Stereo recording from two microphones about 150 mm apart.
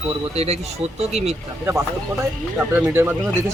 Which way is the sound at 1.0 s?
45° right (ahead or behind).